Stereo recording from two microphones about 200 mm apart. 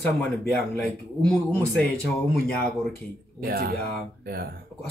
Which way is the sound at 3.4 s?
50° right (ahead or behind).